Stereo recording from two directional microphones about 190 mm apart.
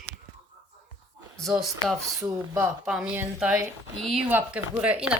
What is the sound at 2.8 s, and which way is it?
Speech, 5° right (ahead or behind).